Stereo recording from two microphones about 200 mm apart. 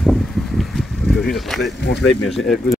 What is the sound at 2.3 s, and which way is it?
Speech, centre (ahead or behind).